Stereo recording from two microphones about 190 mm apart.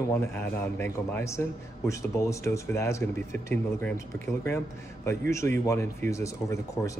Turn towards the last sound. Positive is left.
turn(degrees=15)  # may be behind; listen again after turning